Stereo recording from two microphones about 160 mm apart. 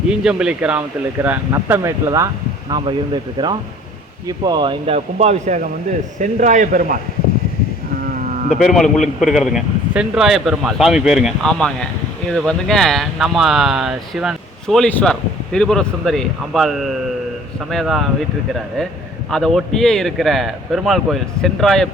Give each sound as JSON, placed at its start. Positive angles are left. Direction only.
{"t": 0.3, "sound": "speech", "side_deg": -5}
{"t": 4.9, "sound": "a man's voice", "side_deg": -45}
{"t": 8.5, "sound": "speech", "side_deg": 0}
{"t": 19.3, "sound": "speech", "side_deg": 0}